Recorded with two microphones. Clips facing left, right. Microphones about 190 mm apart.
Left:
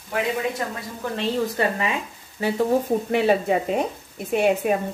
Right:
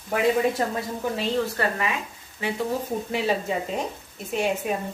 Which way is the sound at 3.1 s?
60° left (ahead or behind).